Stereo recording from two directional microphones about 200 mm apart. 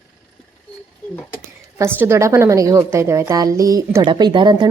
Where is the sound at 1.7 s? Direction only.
10° right (ahead or behind).